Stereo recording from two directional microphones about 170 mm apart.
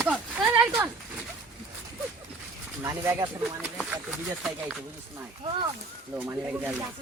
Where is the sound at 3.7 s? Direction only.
5° right (ahead or behind).